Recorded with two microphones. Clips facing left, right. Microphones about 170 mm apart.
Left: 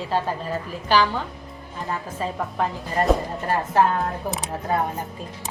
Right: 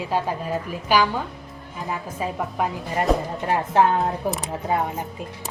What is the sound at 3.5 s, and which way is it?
Speech, 20° right (ahead or behind).